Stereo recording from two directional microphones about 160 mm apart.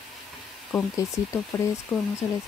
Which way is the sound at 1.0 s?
20° left (ahead or behind).